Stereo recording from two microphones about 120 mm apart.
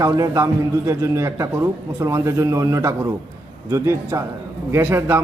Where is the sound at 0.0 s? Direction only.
25° right (ahead or behind).